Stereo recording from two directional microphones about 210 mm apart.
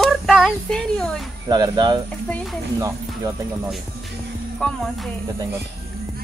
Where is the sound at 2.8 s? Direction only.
15° right (ahead or behind).